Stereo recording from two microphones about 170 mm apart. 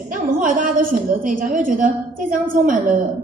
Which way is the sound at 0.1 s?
50° right (ahead or behind).